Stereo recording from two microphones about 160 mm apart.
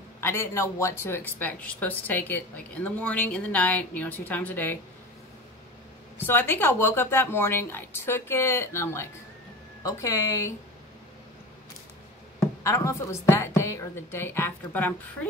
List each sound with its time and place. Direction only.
0.2 s speech: 15° left (ahead or behind)
6.1 s a woman's voice: 10° left (ahead or behind)
12.6 s speech: 20° left (ahead or behind)